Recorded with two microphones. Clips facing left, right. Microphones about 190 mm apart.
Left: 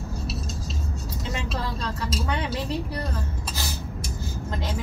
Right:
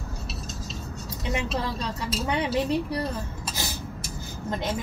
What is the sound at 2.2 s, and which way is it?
Speech, 15° right (ahead or behind).